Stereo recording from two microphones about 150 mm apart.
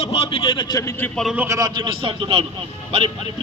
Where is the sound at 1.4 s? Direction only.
25° right (ahead or behind).